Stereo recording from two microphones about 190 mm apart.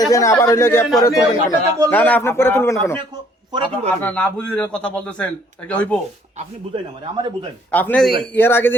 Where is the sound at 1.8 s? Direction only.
10° left (ahead or behind).